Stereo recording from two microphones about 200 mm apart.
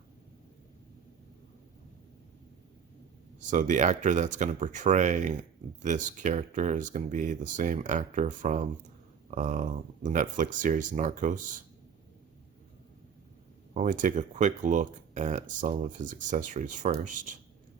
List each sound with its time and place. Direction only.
3.5 s speech: 40° right (ahead or behind)
13.7 s speech: 40° right (ahead or behind)